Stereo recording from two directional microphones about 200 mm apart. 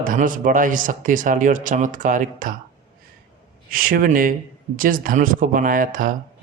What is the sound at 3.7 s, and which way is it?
Speech, 45° right (ahead or behind).